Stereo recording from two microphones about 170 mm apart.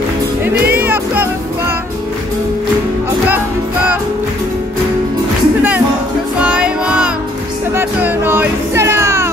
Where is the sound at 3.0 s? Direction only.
10° right (ahead or behind).